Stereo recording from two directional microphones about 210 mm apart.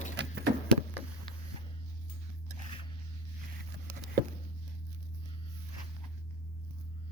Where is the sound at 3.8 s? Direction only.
45° right (ahead or behind).